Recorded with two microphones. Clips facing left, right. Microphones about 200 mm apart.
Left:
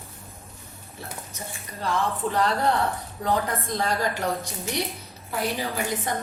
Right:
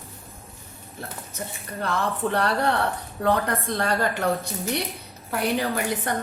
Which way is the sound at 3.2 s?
65° right (ahead or behind).